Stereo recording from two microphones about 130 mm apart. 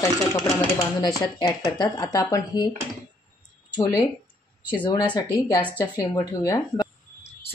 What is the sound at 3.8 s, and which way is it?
Speech, 25° left (ahead or behind).